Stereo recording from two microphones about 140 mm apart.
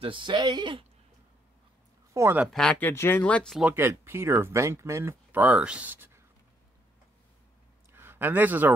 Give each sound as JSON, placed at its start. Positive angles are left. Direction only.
{"t": 0.0, "sound": "speech", "side_deg": -35}
{"t": 2.1, "sound": "speech", "side_deg": -20}
{"t": 2.4, "sound": "speech", "side_deg": 5}
{"t": 3.7, "sound": "speech", "side_deg": -15}
{"t": 7.9, "sound": "a sound", "side_deg": -15}